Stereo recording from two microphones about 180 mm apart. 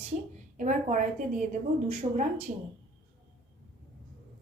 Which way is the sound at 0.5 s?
45° right (ahead or behind).